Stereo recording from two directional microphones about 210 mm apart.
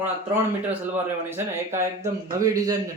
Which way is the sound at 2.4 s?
15° right (ahead or behind).